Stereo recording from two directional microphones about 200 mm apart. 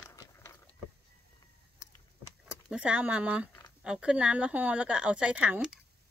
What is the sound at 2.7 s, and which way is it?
A woman's voice, 5° right (ahead or behind).